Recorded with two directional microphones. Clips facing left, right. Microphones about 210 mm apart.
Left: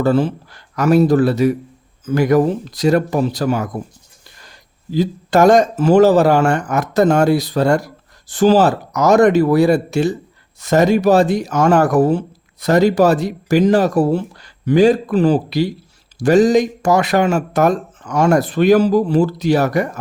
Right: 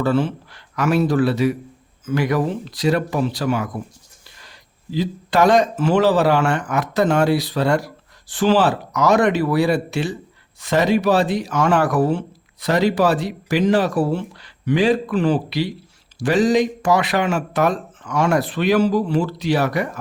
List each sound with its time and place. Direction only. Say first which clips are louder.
0.0 s a man's voice: left 4 dB; 40° left (ahead or behind)